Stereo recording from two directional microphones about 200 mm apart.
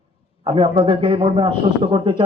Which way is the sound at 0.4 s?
30° right (ahead or behind).